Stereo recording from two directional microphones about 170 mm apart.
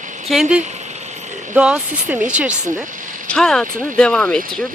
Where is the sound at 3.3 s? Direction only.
5° left (ahead or behind).